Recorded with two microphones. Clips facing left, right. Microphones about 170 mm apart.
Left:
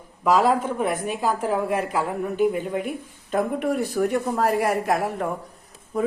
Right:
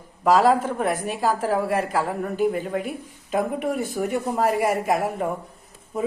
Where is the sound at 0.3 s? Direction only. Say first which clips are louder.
Right 2 dB; 40° right (ahead or behind).